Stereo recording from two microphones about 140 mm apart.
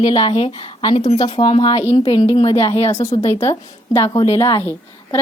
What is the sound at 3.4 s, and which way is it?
A woman's voice, 25° left (ahead or behind).